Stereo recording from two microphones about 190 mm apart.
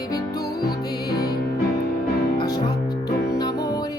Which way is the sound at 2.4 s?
20° left (ahead or behind).